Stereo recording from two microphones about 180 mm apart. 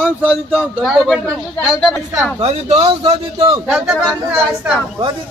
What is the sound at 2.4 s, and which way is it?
A man's voice, 35° right (ahead or behind).